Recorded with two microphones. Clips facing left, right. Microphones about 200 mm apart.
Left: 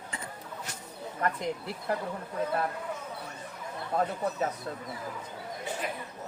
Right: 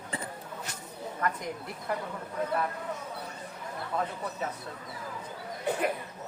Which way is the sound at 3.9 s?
40° left (ahead or behind).